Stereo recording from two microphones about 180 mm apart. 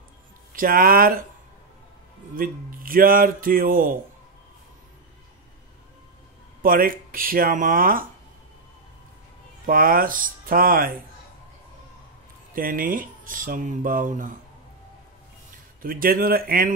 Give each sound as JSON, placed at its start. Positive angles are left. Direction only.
{"t": 0.5, "sound": "speech", "side_deg": -50}
{"t": 2.3, "sound": "speech", "side_deg": -50}
{"t": 6.6, "sound": "speech", "side_deg": -50}
{"t": 9.7, "sound": "speech", "side_deg": -50}
{"t": 12.5, "sound": "speech", "side_deg": -50}
{"t": 15.8, "sound": "speech", "side_deg": -50}